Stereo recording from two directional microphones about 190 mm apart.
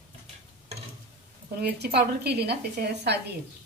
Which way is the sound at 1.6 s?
60° right (ahead or behind).